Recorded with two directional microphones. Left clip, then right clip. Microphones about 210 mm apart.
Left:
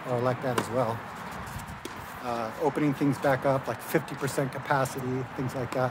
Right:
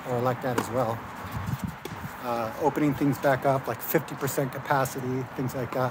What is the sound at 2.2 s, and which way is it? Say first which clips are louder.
Speech: right 2 dB; 15° right (ahead or behind).